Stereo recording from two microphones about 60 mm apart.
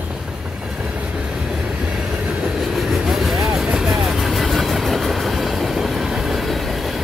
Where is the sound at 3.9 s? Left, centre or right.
Centre.